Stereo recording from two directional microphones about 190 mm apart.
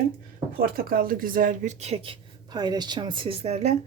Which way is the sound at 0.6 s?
50° right (ahead or behind).